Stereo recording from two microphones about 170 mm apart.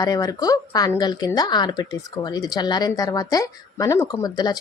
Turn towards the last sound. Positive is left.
turn(degrees=25)  # may be behind; listen again after turning